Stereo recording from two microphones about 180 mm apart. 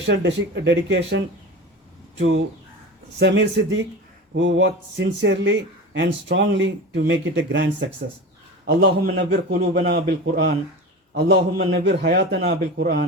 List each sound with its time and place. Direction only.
0.1 s speech: 75° right (ahead or behind)
3.2 s speech: 80° right
8.6 s a man's voice: 60° right (ahead or behind)
11.6 s a man's voice: 55° right (ahead or behind)
12.5 s speech: 70° right (ahead or behind)